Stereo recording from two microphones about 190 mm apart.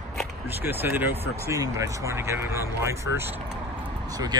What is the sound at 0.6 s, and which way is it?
Speech, 10° right (ahead or behind).